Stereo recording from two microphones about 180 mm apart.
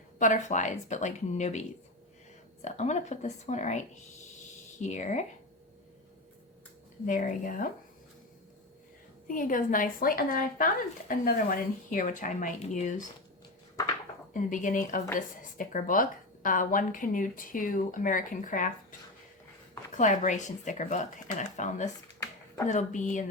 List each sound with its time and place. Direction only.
0.2 s a woman's voice: 45° left (ahead or behind)
4.8 s a woman's voice: 40° left (ahead or behind)
7.0 s speech: 45° left (ahead or behind)
9.2 s speech: 50° left (ahead or behind)
14.3 s speech: 45° left (ahead or behind)
20.0 s speech: 45° left (ahead or behind)